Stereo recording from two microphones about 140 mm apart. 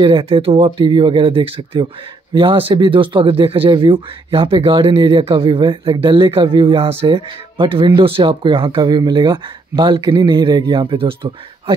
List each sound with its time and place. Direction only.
0.0 s speech: 35° right (ahead or behind)